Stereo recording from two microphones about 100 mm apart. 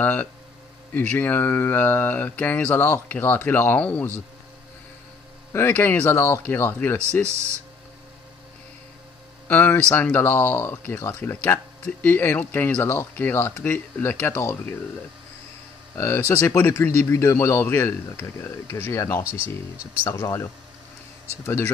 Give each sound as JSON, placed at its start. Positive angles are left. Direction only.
{"t": 0.0, "sound": "speech", "side_deg": 20}
{"t": 5.5, "sound": "speech", "side_deg": 20}
{"t": 7.2, "sound": "speech", "side_deg": -30}
{"t": 9.5, "sound": "speech", "side_deg": 15}
{"t": 16.0, "sound": "speech", "side_deg": 25}